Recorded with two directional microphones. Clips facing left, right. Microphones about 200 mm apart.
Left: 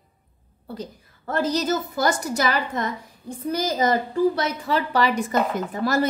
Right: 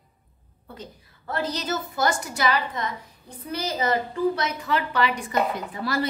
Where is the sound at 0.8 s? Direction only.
45° left (ahead or behind).